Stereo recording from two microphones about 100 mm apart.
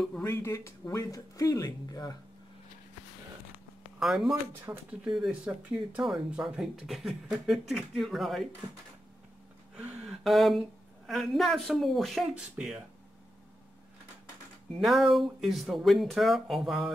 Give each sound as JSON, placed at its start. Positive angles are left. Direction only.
{"t": 0.2, "sound": "speech", "side_deg": 30}
{"t": 4.0, "sound": "speech", "side_deg": 0}
{"t": 4.7, "sound": "speech", "side_deg": -25}
{"t": 5.0, "sound": "speech", "side_deg": -5}
{"t": 9.8, "sound": "a sound", "side_deg": -10}
{"t": 11.1, "sound": "speech", "side_deg": 0}
{"t": 14.8, "sound": "speech", "side_deg": 0}